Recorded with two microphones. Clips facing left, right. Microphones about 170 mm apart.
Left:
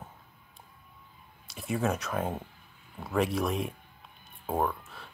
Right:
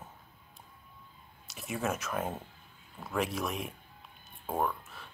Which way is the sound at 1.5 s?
Centre (ahead or behind).